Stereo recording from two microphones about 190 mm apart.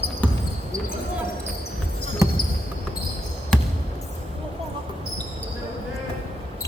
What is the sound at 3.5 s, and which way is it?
Basketball bounce, 5° left (ahead or behind).